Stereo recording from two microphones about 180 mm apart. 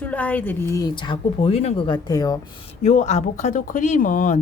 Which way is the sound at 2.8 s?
40° left (ahead or behind).